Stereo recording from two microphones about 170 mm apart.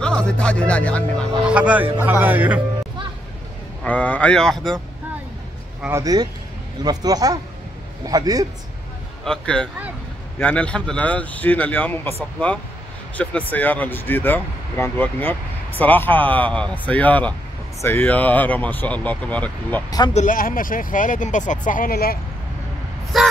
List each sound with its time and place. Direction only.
0.0 s speech: 5° left (ahead or behind)
1.4 s music: 10° right (ahead or behind)
3.8 s speech: 10° left (ahead or behind)
5.8 s music: 15° right (ahead or behind)
6.8 s a man's voice: 25° right (ahead or behind)
9.2 s speech: 5° left (ahead or behind)
13.2 s speech: 10° left (ahead or behind)
20.2 s speech: 55° left (ahead or behind)
23.1 s speech: centre (ahead or behind)